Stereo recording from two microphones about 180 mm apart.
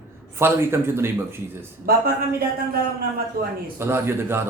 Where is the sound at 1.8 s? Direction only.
55° right (ahead or behind).